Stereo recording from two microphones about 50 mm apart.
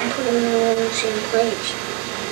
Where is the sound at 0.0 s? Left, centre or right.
Centre.